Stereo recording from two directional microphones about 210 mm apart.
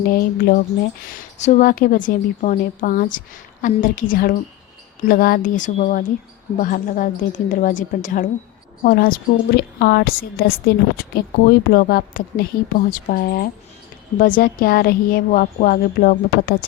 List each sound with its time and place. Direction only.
0.0 s a woman's voice: 45° left (ahead or behind)